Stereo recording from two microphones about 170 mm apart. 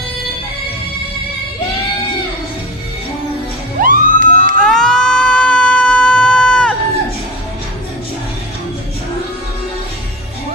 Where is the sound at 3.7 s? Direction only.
50° right (ahead or behind).